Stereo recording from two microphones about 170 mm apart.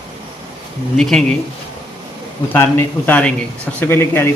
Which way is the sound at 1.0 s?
5° left (ahead or behind).